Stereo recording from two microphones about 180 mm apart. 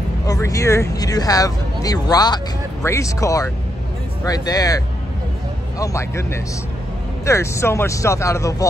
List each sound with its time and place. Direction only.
0.3 s speech: 20° left (ahead or behind)